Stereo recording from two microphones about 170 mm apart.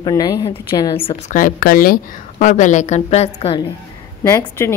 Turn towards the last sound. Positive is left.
turn(degrees=15)  # may be behind; listen again after turning